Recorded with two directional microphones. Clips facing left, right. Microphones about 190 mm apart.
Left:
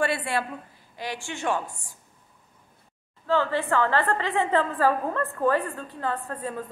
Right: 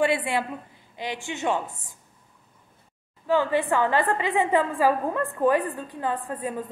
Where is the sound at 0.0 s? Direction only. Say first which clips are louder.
Right 3 dB; 15° right (ahead or behind).